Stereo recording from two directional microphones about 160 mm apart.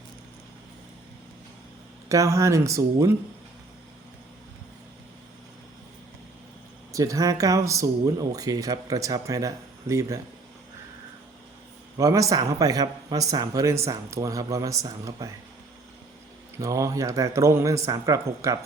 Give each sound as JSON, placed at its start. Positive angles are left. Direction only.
{"t": 2.0, "sound": "a man's voice", "side_deg": -20}
{"t": 6.9, "sound": "a man's voice", "side_deg": -20}
{"t": 11.9, "sound": "a man's voice", "side_deg": -20}
{"t": 16.6, "sound": "a man's voice", "side_deg": -20}